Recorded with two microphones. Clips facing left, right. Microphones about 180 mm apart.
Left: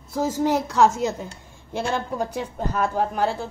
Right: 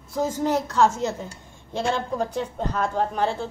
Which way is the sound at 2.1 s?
10° left (ahead or behind).